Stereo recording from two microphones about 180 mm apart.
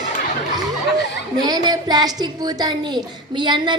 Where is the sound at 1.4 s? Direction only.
20° right (ahead or behind).